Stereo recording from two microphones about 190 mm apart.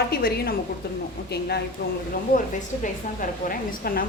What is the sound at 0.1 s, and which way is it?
A woman's voice, 55° left (ahead or behind).